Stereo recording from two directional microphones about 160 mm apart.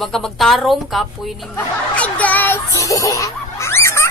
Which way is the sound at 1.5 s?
10° left (ahead or behind).